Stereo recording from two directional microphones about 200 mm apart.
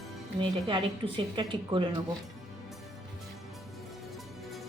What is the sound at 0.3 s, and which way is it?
A woman's voice, 25° right (ahead or behind).